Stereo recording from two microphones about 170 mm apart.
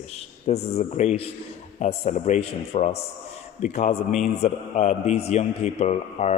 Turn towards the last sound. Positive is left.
turn(degrees=40)  # may be behind; listen again after turning